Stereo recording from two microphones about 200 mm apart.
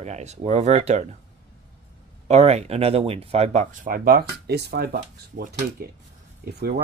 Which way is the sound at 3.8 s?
45° right (ahead or behind).